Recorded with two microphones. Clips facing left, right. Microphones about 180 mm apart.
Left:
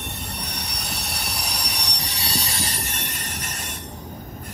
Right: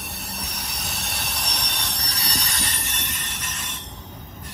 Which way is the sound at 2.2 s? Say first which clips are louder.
Left 3 dB; 30° left (ahead or behind).